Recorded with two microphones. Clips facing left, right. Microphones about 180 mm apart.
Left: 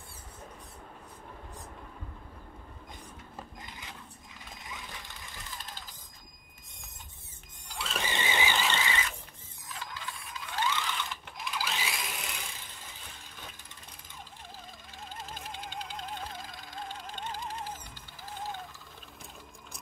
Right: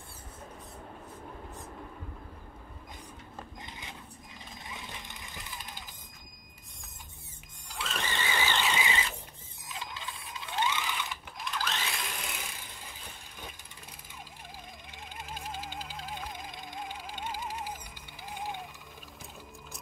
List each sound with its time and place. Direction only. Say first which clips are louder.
4.6 s sewing machine: right 1 dB; 25° right (ahead or behind)
7.7 s vehicle: left 1 dB; centre (ahead or behind)
8.1 s squeal: left 1 dB; 15° left (ahead or behind)
8.5 s squeal: even; 5° right (ahead or behind)
8.8 s squeal: right 1 dB; 25° right (ahead or behind)
9.7 s a sound: even; 20° right (ahead or behind); by 12.2 s 5° left (ahead or behind)
15.5 s music: even; 5° right (ahead or behind)